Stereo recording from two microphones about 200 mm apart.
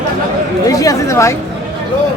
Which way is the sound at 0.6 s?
15° left (ahead or behind).